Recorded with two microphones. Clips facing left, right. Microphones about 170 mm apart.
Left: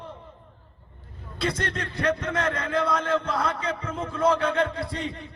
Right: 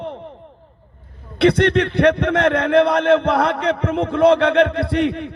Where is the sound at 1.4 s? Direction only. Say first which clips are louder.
Right 14 dB; 70° right (ahead or behind).